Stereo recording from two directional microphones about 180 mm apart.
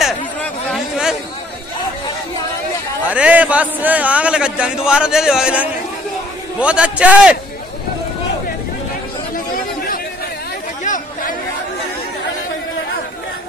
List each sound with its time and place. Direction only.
0.0 s chatter: centre (ahead or behind)
3.1 s a man's voice: 5° right (ahead or behind)
10.8 s chatter: 45° left (ahead or behind)